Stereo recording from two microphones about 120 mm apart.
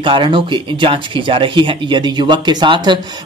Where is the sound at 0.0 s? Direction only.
45° right (ahead or behind).